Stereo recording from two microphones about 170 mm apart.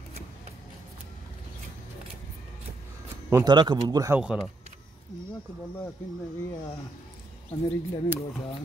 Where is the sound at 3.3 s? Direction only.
25° right (ahead or behind).